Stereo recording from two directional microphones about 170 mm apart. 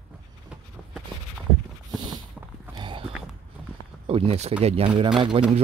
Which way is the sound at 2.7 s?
30° right (ahead or behind).